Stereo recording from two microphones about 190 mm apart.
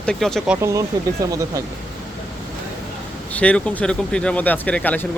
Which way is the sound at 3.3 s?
5° left (ahead or behind).